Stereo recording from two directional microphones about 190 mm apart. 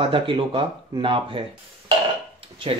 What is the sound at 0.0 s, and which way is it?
Speech, 25° right (ahead or behind).